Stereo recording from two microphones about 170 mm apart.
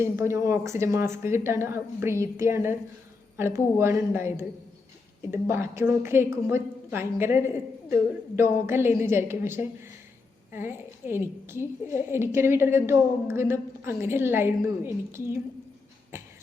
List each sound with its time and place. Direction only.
0.0 s a woman's voice: 15° right (ahead or behind)